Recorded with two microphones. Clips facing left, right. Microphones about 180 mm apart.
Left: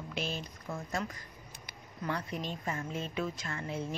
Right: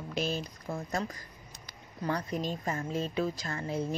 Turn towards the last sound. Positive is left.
turn(degrees=-35)  # may be behind; listen again after turning